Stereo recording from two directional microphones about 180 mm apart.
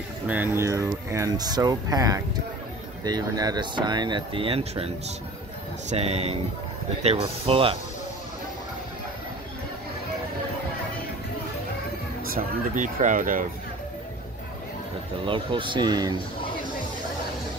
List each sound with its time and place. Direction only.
0.3 s speech: 15° right (ahead or behind); by 7.7 s 30° right (ahead or behind)
12.3 s speech: 50° right (ahead or behind)
15.2 s speech: 30° right (ahead or behind)